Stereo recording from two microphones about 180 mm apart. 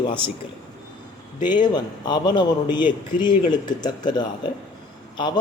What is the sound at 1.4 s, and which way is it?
A man's voice, 25° left (ahead or behind).